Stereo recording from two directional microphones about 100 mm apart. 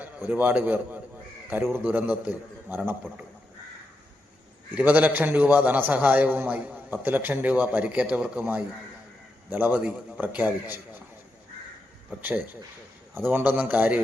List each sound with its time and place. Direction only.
0.0 s a man's voice: 15° right (ahead or behind)
4.8 s a man's voice: 15° right (ahead or behind)
13.1 s a man's voice: 20° right (ahead or behind)